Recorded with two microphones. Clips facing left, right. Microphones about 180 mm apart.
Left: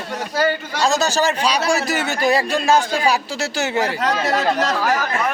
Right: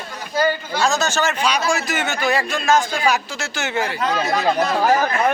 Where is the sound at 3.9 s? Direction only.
85° left.